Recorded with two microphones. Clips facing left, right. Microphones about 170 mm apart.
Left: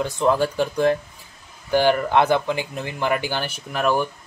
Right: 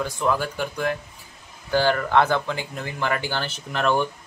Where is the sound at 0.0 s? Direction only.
25° left (ahead or behind).